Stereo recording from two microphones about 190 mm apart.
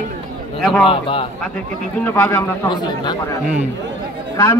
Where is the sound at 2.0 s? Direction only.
10° left (ahead or behind).